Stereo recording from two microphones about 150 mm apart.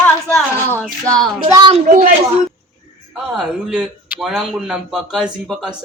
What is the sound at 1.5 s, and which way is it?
Speech, 30° right (ahead or behind).